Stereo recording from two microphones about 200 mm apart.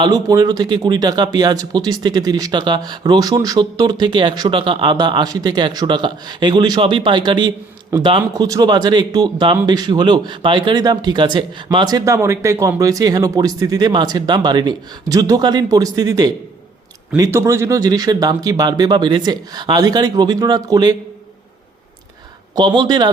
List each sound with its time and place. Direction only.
0.0 s speech: 20° right (ahead or behind)
22.5 s speech: 20° right (ahead or behind)